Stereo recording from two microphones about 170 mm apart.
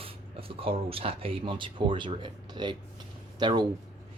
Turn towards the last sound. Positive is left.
turn(degrees=-25)  # may be behind; listen again after turning